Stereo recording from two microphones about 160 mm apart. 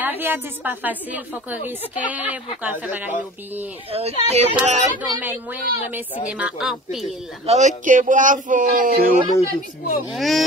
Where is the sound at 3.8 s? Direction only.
40° right (ahead or behind).